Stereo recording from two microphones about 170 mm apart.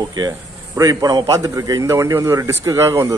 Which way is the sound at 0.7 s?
20° right (ahead or behind).